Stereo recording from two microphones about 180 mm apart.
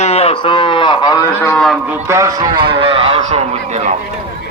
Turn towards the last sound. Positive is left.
turn(degrees=-40)  # may be behind; listen again after turning